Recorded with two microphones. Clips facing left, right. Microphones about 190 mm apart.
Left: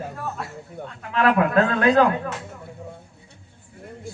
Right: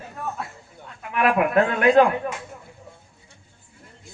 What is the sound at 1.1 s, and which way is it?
Speech, 20° right (ahead or behind).